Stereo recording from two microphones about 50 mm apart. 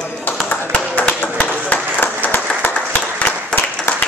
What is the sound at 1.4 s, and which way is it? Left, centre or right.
Speech, left.